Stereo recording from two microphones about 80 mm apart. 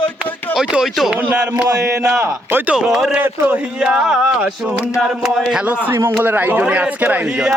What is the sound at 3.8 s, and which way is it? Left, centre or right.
Speech, centre.